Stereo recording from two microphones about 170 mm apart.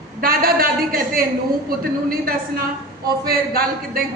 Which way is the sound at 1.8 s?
60° right (ahead or behind).